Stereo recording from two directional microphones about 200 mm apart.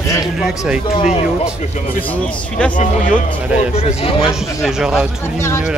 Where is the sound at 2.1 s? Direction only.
5° left (ahead or behind).